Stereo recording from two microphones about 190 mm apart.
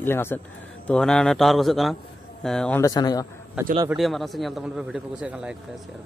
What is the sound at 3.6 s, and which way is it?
A man's voice, 10° right (ahead or behind).